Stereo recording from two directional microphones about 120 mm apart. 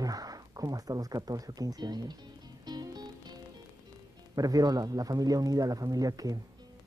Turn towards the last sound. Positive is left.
turn(degrees=-30)  # may be behind; listen again after turning